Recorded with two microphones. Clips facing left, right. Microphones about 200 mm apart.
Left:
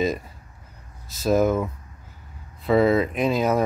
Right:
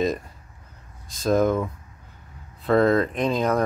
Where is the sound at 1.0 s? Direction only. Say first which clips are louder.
Left 1 dB; 5° left (ahead or behind).